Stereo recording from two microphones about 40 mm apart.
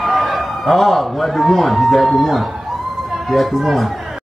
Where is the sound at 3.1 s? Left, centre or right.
Centre.